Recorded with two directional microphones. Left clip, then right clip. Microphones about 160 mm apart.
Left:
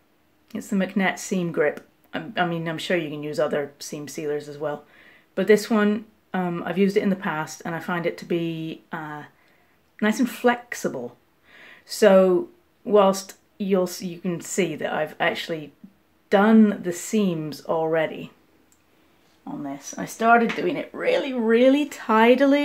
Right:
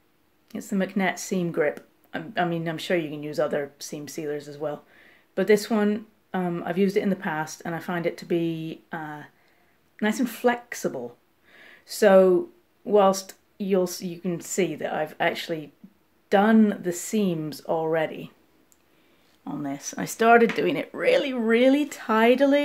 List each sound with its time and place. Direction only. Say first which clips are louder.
0.5 s speech: left 2 dB; 5° right (ahead or behind)
11.5 s a sound: left 3 dB; 5° right (ahead or behind)
12.8 s speech: left 2 dB; 5° right (ahead or behind)
19.4 s speech: right 1 dB; 45° right (ahead or behind); by 22.6 s 5° right (ahead or behind)